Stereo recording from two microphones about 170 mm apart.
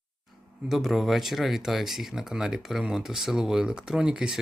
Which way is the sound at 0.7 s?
Centre (ahead or behind).